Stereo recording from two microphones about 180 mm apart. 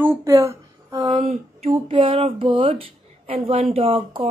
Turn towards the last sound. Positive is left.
turn(degrees=-30)  # may be behind; listen again after turning